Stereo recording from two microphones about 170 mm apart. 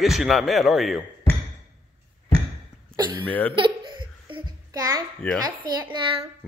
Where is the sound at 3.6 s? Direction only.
30° right (ahead or behind).